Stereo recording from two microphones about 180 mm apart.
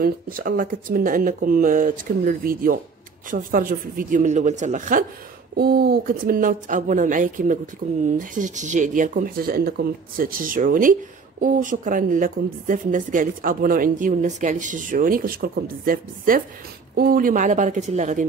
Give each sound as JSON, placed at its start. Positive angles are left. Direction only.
{"t": 0.0, "sound": "speech", "side_deg": -55}